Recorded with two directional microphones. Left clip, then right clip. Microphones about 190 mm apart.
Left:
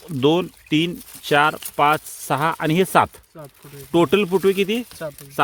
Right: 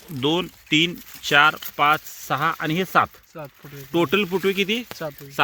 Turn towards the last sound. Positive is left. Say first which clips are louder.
# left 1 dB
turn(degrees=55)  # may be behind; listen again after turning